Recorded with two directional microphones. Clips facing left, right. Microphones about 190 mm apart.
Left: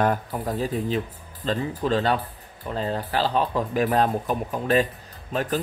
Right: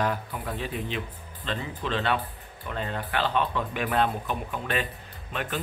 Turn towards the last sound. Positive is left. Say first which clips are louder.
# left 7 dB
turn(degrees=40)  # may be behind; listen again after turning